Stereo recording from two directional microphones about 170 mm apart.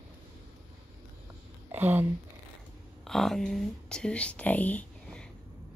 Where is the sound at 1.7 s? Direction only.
10° right (ahead or behind).